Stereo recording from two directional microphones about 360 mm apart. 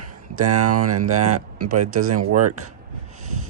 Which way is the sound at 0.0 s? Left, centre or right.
Right.